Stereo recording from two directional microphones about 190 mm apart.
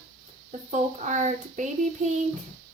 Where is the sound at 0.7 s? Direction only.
40° right (ahead or behind).